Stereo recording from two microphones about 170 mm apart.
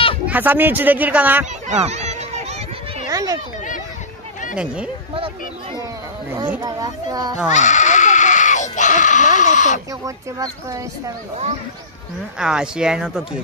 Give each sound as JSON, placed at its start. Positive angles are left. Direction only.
{"t": 0.3, "sound": "speech", "side_deg": -10}
{"t": 1.7, "sound": "a sound", "side_deg": -40}
{"t": 3.1, "sound": "a sound", "side_deg": -20}
{"t": 4.6, "sound": "speech", "side_deg": -5}
{"t": 6.3, "sound": "speech", "side_deg": -20}
{"t": 7.4, "sound": "goat", "side_deg": 45}
{"t": 10.0, "sound": "speech", "side_deg": -20}
{"t": 12.4, "sound": "speech", "side_deg": -5}